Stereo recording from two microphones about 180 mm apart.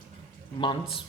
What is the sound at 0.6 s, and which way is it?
Speech, 30° left (ahead or behind).